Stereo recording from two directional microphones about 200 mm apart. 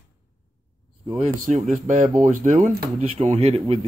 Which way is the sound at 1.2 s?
35° right (ahead or behind).